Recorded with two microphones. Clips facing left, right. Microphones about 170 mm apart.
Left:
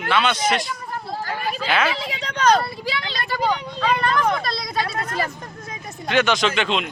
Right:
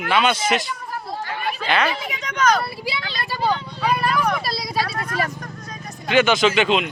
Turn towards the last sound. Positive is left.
turn(degrees=-5)  # may be behind; listen again after turning